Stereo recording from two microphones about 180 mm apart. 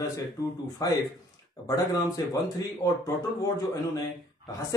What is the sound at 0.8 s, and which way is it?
Speech, 20° left (ahead or behind).